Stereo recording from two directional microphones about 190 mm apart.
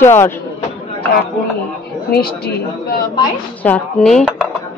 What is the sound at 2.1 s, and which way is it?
Speech, 55° left (ahead or behind).